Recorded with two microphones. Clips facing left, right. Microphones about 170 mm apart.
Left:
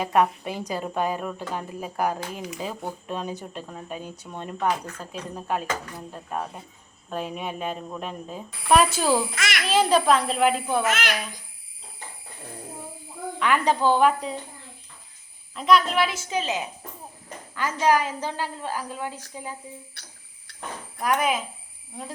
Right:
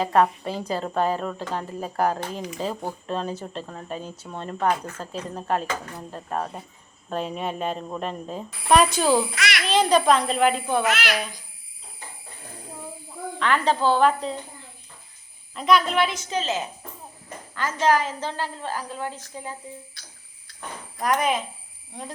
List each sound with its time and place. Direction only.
0.1 s a woman's voice: 15° left (ahead or behind)
9.3 s a child's voice: 45° left (ahead or behind)
9.6 s speech: 5° left (ahead or behind)
13.4 s a woman's voice: 10° left (ahead or behind)
15.5 s a woman's voice: centre (ahead or behind)
20.0 s speech: 65° left (ahead or behind)
20.5 s a sound: 70° left (ahead or behind)
21.0 s speech: 5° left (ahead or behind)